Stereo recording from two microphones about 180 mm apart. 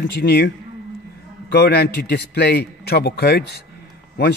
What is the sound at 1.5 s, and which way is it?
Speech, 65° left (ahead or behind).